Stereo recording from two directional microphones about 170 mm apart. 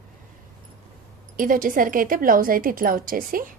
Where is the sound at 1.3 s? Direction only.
50° right (ahead or behind).